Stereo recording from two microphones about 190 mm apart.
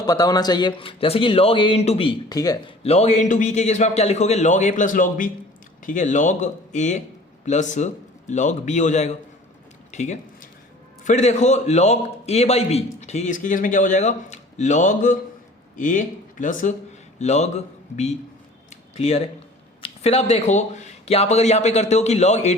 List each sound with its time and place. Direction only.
0.0 s speech: 20° left (ahead or behind)
2.8 s a man's voice: 35° left (ahead or behind)
9.9 s a sound: 40° left (ahead or behind)
11.0 s a man's voice: 35° left (ahead or behind)